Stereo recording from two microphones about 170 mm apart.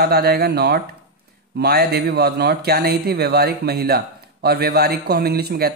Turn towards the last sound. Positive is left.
turn(degrees=-65)  # may be behind; listen again after turning